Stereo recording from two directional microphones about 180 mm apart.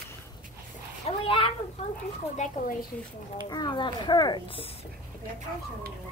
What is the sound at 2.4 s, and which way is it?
Speech, 40° left (ahead or behind).